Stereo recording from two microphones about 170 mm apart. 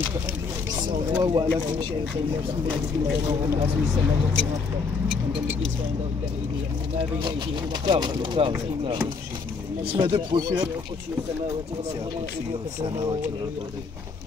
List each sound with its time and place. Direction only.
0.7 s speech: 25° right (ahead or behind)
7.8 s speech: 25° right (ahead or behind)
9.9 s speech: 25° right (ahead or behind)